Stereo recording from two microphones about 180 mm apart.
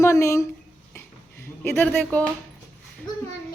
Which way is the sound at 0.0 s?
15° left (ahead or behind).